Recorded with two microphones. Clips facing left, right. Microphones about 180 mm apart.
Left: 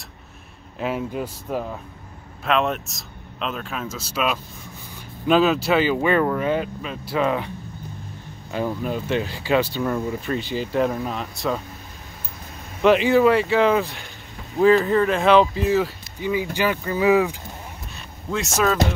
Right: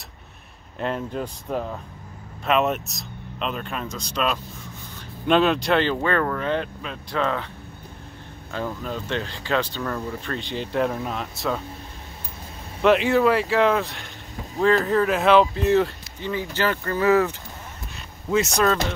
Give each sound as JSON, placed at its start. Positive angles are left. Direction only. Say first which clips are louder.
{"t": 0.7, "sound": "speech", "louder": "left 1 dB", "side_deg": 5}
{"t": 12.8, "sound": "speech", "louder": "left 2 dB", "side_deg": 0}
{"t": 18.3, "sound": "speech", "louder": "right 1 dB", "side_deg": 0}